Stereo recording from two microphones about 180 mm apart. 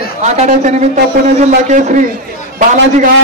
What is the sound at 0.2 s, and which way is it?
A man's voice, 40° right (ahead or behind).